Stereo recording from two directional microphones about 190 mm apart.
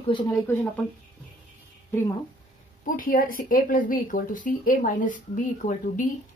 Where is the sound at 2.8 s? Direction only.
45° left (ahead or behind).